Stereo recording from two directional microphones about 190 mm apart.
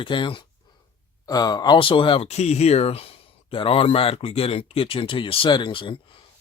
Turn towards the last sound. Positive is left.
turn(degrees=25)  # may be behind; listen again after turning